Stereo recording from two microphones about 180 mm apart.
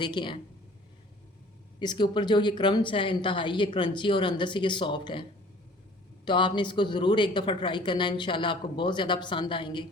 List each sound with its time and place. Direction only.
0.0 s speech: 25° left (ahead or behind)
1.8 s speech: 25° left (ahead or behind)
6.2 s speech: 25° left (ahead or behind)